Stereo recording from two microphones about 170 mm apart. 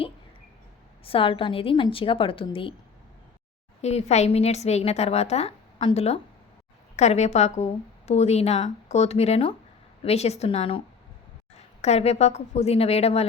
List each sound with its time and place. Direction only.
1.0 s a woman's voice: 30° left (ahead or behind)
3.8 s a woman's voice: 40° left (ahead or behind)